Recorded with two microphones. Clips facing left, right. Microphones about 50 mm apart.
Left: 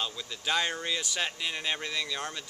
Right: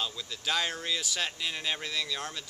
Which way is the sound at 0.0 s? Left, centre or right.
Centre.